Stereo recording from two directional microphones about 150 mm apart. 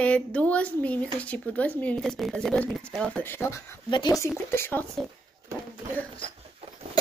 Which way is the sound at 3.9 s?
30° left (ahead or behind).